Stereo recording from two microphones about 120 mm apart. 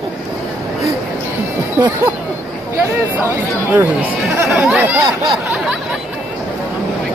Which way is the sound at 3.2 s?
15° right (ahead or behind).